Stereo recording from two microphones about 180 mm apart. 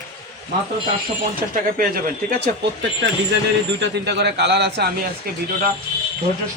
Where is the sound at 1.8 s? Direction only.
50° right (ahead or behind).